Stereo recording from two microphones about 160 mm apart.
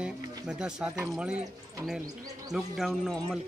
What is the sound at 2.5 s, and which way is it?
Speech, centre (ahead or behind).